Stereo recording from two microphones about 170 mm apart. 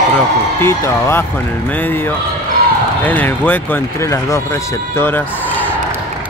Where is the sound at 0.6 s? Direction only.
15° left (ahead or behind).